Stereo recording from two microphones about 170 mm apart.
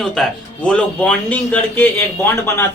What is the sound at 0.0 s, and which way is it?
A man's voice, 5° left (ahead or behind).